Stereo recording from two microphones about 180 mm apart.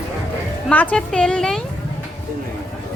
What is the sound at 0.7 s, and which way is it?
Speech, 10° left (ahead or behind).